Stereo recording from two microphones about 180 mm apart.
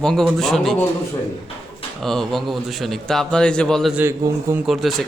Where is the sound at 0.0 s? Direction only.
5° left (ahead or behind).